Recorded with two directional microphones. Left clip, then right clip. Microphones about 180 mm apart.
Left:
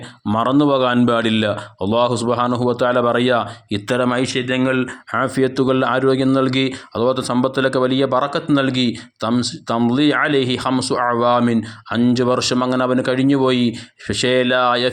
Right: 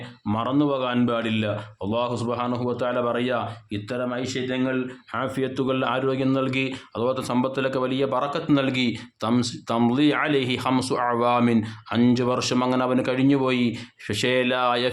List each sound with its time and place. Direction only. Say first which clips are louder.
0.3 s a man's voice: left 8 dB; 40° left (ahead or behind); by 4.8 s 55° left (ahead or behind)
5.1 s speech: left 8 dB; 25° left (ahead or behind)